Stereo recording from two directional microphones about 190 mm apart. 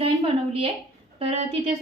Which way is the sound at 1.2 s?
35° right (ahead or behind).